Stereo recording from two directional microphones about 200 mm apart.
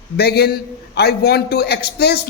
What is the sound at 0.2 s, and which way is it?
A man's voice, 50° left (ahead or behind).